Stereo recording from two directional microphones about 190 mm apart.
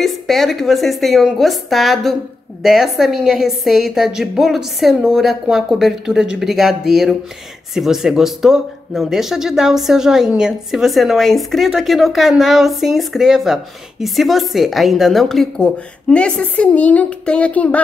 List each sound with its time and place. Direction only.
0.0 s speech: centre (ahead or behind)